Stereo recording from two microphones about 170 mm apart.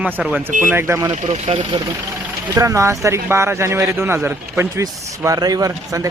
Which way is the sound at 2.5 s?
20° right (ahead or behind).